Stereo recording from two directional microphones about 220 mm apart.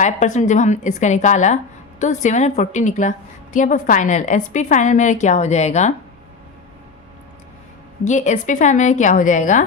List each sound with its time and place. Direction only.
0.0 s a woman's voice: 30° left (ahead or behind)
8.0 s a woman's voice: 35° left (ahead or behind)